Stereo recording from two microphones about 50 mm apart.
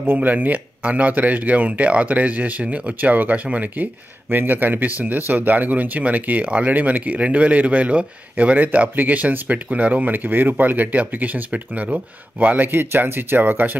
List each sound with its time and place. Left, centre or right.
0.0 s speech: right
3.0 s speech: right